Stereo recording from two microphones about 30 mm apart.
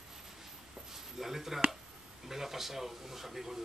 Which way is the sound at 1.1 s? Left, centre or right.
Centre.